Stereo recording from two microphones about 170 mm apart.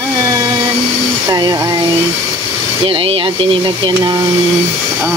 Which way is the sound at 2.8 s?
30° right (ahead or behind).